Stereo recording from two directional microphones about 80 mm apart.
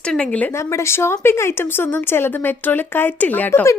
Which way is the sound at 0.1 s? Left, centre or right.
Centre.